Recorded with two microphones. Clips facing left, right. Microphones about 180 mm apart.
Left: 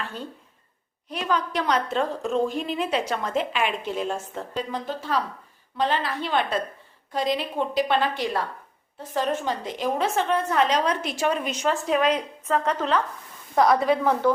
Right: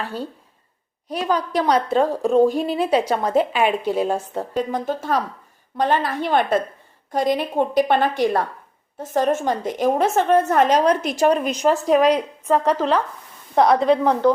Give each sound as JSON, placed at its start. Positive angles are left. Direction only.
{"t": 0.0, "sound": "a woman's voice", "side_deg": -35}
{"t": 13.6, "sound": "a woman's voice", "side_deg": 0}
{"t": 13.9, "sound": "speech", "side_deg": -15}